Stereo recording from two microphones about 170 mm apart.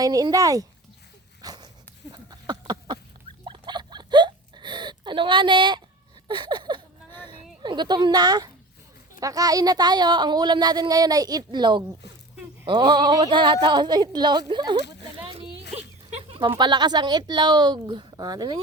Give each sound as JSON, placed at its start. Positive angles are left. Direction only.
{"t": 0.0, "sound": "speech", "side_deg": -20}
{"t": 1.4, "sound": "dog", "side_deg": -25}
{"t": 2.1, "sound": "a sound", "side_deg": -25}
{"t": 7.6, "sound": "speech", "side_deg": -25}
{"t": 15.2, "sound": "a sound", "side_deg": -30}
{"t": 16.6, "sound": "speech", "side_deg": -25}